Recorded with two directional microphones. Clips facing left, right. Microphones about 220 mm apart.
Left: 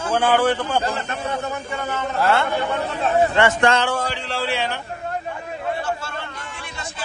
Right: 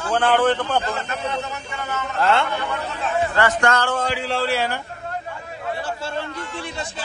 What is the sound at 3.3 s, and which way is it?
Speech, 25° left (ahead or behind).